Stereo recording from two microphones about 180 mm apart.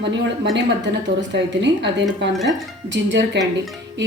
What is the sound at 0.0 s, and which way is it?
Speech, 75° right (ahead or behind).